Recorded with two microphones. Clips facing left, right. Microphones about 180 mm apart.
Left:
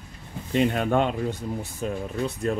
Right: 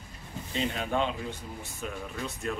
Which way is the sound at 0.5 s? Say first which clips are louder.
Left 8 dB; 55° left (ahead or behind).